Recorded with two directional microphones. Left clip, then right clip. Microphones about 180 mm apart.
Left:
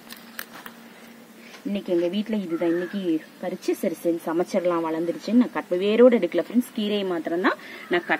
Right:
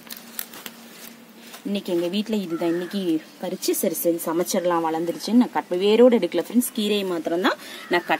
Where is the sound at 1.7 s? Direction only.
30° right (ahead or behind).